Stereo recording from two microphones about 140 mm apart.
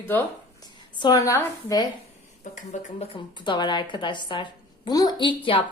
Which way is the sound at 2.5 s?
60° left (ahead or behind).